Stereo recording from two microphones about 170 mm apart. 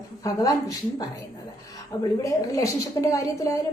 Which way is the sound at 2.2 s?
20° left (ahead or behind).